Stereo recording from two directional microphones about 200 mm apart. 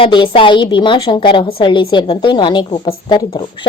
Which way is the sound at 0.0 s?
25° left (ahead or behind).